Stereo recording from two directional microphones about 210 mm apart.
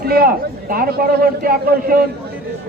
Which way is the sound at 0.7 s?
45° right (ahead or behind).